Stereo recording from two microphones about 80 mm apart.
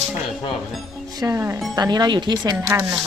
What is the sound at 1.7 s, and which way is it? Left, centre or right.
Speech, right.